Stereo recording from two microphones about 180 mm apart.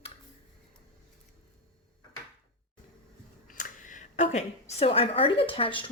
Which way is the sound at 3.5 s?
50° left (ahead or behind).